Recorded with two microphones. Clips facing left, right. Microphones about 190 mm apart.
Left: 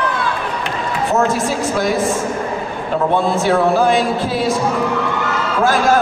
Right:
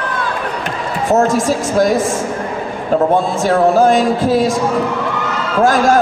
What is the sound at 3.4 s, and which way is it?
A man's voice, 45° right (ahead or behind).